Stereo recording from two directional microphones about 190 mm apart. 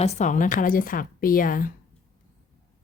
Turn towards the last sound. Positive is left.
turn(degrees=45)  # may be behind; listen again after turning